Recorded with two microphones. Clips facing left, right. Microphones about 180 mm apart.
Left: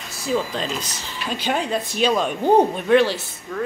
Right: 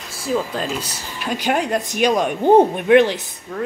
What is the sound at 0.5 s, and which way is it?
Speech, 10° right (ahead or behind).